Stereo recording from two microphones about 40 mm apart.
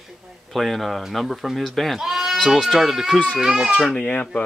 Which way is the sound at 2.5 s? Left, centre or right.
Centre.